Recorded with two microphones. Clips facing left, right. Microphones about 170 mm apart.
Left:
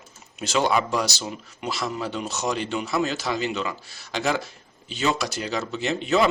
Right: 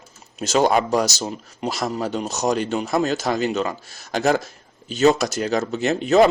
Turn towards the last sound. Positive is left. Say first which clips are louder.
# right 6 dB
turn(degrees=-45)  # may be behind; listen again after turning